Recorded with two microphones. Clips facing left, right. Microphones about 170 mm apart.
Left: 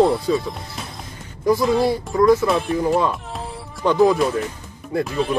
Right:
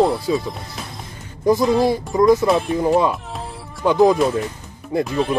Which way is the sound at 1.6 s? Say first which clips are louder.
Right 1 dB; centre (ahead or behind).